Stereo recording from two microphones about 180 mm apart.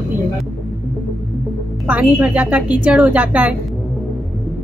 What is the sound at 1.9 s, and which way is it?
A woman's voice, 5° right (ahead or behind).